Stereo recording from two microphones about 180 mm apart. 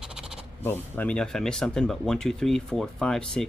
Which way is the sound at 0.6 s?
10° left (ahead or behind).